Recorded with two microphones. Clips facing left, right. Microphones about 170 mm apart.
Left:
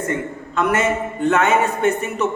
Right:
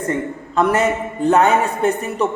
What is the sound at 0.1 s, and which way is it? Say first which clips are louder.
A man's voice: right 2 dB; 35° right (ahead or behind).